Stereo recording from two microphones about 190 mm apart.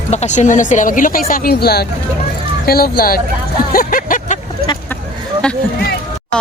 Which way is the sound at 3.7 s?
45° left (ahead or behind).